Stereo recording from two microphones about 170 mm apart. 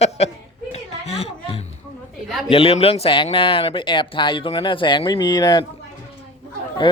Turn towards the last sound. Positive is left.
turn(degrees=30)  # may be behind; listen again after turning